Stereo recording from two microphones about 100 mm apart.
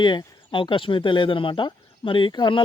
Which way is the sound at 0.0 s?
50° left (ahead or behind).